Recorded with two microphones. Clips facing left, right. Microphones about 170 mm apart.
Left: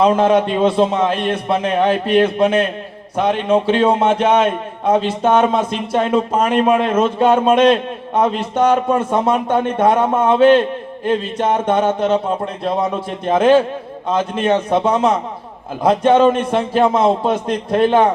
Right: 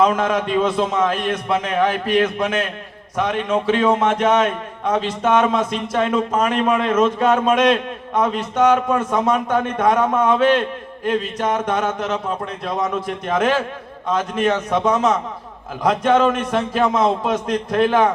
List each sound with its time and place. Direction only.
0.0 s a man's voice: 30° left (ahead or behind)